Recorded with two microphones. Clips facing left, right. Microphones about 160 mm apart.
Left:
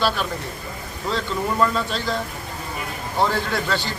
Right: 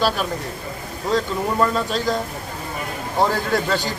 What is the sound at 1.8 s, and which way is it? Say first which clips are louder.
Speech: right 3 dB; 40° right (ahead or behind).